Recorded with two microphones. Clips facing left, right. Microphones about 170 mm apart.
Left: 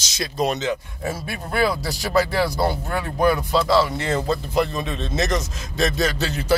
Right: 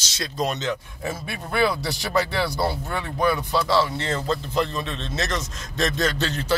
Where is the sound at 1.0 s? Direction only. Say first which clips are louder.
Left 2 dB; 40° left (ahead or behind).